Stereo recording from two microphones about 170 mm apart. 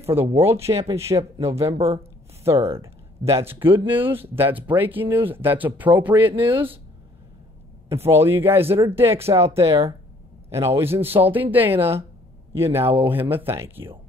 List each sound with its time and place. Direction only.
0.4 s speech: 15° right (ahead or behind)
2.5 s speech: 35° right (ahead or behind)
2.8 s speech: 15° right (ahead or behind)
7.9 s speech: 15° right (ahead or behind)